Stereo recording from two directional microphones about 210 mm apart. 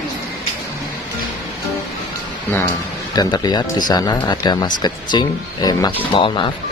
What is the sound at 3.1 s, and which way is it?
Speech, 20° left (ahead or behind).